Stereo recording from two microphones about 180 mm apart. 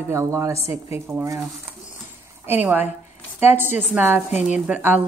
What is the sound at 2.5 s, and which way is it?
Speech, 10° right (ahead or behind).